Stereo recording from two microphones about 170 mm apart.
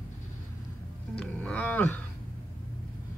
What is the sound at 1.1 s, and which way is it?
Music, 5° left (ahead or behind).